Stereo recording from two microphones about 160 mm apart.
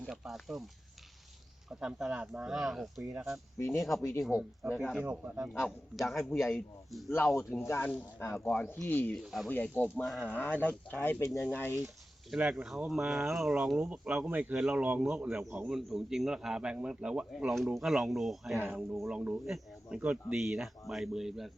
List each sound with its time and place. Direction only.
0.0 s a man's voice: centre (ahead or behind)
1.8 s a man's voice: 5° right (ahead or behind)
3.0 s speech: 20° right (ahead or behind)
3.6 s speech: 20° left (ahead or behind)
4.2 s a man's voice: 5° right (ahead or behind)
7.6 s speech: 15° left (ahead or behind)
9.2 s a man's voice: centre (ahead or behind)
9.5 s a man's voice: 10° left (ahead or behind)
11.3 s a man's voice: centre (ahead or behind)